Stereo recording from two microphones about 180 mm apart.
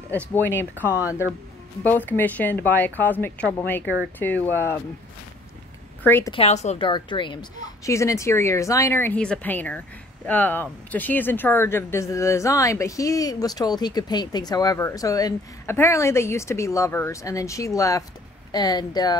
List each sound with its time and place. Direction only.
0.1 s speech: 10° left (ahead or behind)
1.8 s speech: 10° left (ahead or behind)
6.0 s speech: 10° left (ahead or behind)
6.3 s a woman's voice: 35° left (ahead or behind)
6.9 s speech: 25° left (ahead or behind)